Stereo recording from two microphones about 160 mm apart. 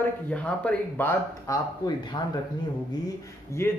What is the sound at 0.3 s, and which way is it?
Speech, 10° left (ahead or behind).